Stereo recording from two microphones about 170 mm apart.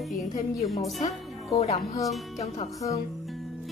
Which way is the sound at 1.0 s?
40° left (ahead or behind).